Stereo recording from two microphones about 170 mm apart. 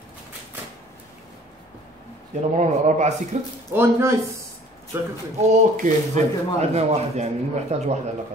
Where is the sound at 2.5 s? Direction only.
45° right (ahead or behind).